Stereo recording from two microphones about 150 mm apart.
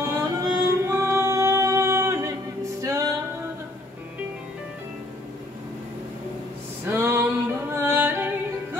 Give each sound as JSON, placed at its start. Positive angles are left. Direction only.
{"t": 0.0, "sound": "music", "side_deg": -20}
{"t": 6.9, "sound": "a sound", "side_deg": -15}
{"t": 7.7, "sound": "yodeling", "side_deg": -15}